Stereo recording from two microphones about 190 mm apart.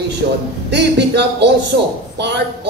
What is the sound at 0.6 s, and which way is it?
A man's voice, 60° right (ahead or behind).